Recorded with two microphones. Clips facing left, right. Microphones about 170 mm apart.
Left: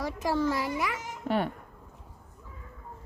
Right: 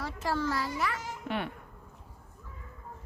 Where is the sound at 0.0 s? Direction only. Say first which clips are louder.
Left 4 dB; 20° left (ahead or behind).